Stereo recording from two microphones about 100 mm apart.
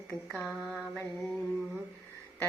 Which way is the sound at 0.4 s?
5° left (ahead or behind).